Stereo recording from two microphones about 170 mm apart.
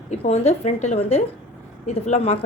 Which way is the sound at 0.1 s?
40° left (ahead or behind).